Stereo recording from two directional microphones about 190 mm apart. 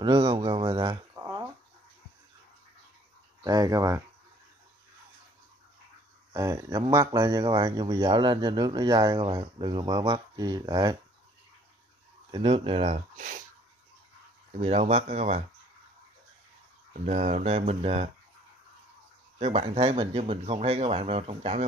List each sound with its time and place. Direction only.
0.0 s a sound: 20° right (ahead or behind)
3.4 s speech: 20° right (ahead or behind)
6.3 s speech: 20° right (ahead or behind)
12.3 s speech: 30° right (ahead or behind)
14.6 s speech: 35° right (ahead or behind)
16.9 s speech: 40° right (ahead or behind)
19.3 s speech: 35° right (ahead or behind)